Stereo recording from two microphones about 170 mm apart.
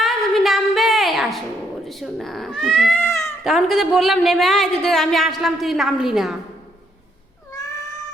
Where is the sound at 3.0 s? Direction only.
15° left (ahead or behind).